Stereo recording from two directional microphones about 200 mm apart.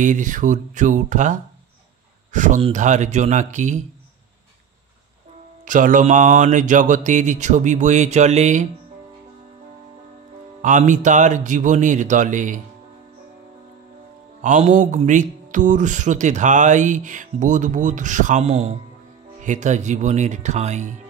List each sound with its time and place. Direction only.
0.0 s speech: 40° right (ahead or behind)
5.7 s speech: 40° right (ahead or behind)
10.6 s speech: 40° right (ahead or behind)
14.4 s speech: 40° right (ahead or behind)